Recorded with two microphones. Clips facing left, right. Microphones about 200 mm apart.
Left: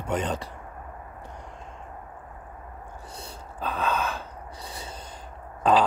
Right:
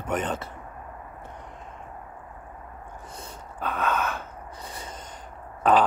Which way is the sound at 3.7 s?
35° left (ahead or behind).